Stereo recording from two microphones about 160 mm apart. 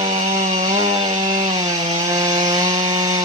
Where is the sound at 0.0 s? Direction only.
50° right (ahead or behind).